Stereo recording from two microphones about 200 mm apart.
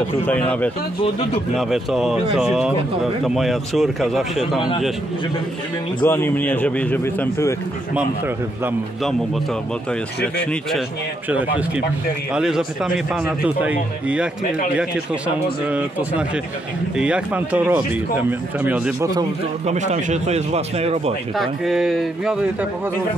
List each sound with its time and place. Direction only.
0.3 s a man's voice: 5° left (ahead or behind)
6.0 s a man's voice: 10° left (ahead or behind)
10.2 s speech: 5° left (ahead or behind)
11.2 s speech: 5° right (ahead or behind)
19.6 s speech: 35° right (ahead or behind)
21.4 s speech: centre (ahead or behind)